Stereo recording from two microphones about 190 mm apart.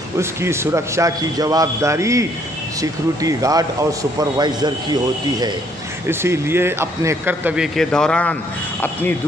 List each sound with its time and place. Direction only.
0.2 s a man's voice: 15° right (ahead or behind)
6.0 s a man's voice: 15° right (ahead or behind); by 8.4 s 5° left (ahead or behind)